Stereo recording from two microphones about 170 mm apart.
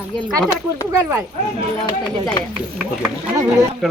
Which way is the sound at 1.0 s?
15° right (ahead or behind).